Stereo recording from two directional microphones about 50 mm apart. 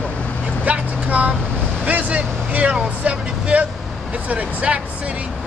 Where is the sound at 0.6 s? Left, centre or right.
Right.